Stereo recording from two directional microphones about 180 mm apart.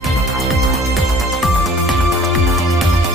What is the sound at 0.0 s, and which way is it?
Music, centre (ahead or behind).